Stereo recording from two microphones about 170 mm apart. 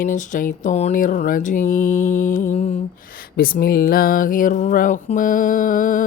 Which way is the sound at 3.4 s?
60° left (ahead or behind).